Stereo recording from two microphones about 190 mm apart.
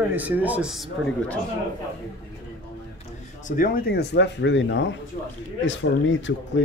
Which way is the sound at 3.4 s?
45° left (ahead or behind).